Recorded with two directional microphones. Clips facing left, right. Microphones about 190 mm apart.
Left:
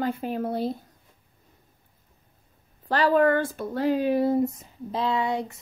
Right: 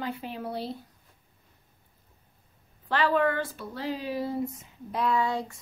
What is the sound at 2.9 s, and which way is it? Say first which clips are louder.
Speech: left 5 dB; 40° left (ahead or behind).